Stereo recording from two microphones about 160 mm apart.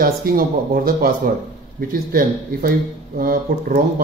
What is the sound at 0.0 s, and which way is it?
Speech, 65° right (ahead or behind).